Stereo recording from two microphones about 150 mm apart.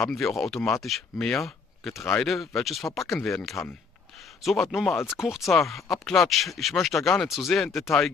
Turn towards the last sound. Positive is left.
turn(degrees=0)  # may be behind; listen again after turning